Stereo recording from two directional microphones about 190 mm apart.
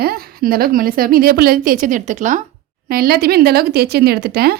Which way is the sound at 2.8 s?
50° right (ahead or behind).